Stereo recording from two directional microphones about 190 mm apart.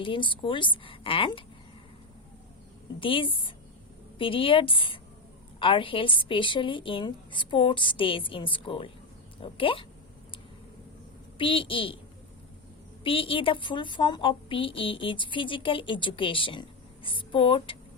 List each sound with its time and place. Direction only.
0.0 s a woman's voice: 25° left (ahead or behind)
3.0 s a woman's voice: 25° left (ahead or behind)
11.3 s a woman's voice: 25° left (ahead or behind)
13.1 s a woman's voice: 30° left (ahead or behind)